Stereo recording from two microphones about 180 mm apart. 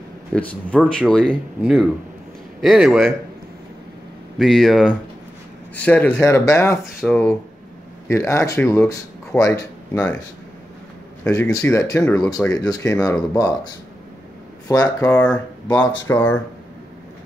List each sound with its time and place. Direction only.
0.3 s speech: 5° left (ahead or behind)
4.4 s speech: centre (ahead or behind); by 6.8 s 15° left (ahead or behind)
6.8 s speech: centre (ahead or behind)
8.1 s speech: 15° left (ahead or behind)
11.2 s speech: 5° left (ahead or behind)
11.5 s speech: 15° left (ahead or behind)
15.0 s speech: 10° left (ahead or behind)